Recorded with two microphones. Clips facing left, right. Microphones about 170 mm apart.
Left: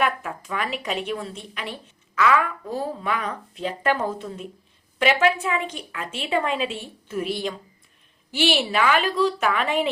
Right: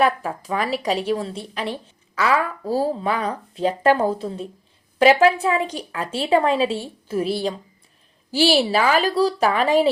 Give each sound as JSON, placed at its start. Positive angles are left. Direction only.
{"t": 0.0, "sound": "a woman's voice", "side_deg": -35}